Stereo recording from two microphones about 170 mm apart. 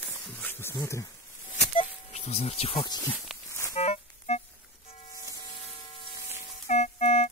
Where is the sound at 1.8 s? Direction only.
40° left (ahead or behind).